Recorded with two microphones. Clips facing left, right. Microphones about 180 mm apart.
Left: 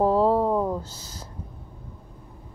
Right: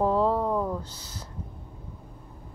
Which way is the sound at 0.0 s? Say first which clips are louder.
Left 4 dB; 35° left (ahead or behind).